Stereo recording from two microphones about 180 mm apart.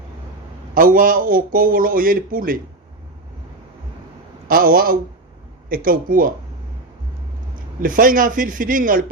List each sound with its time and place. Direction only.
0.7 s speech: 50° right (ahead or behind)
4.4 s speech: 50° right (ahead or behind)
7.8 s speech: 50° right (ahead or behind)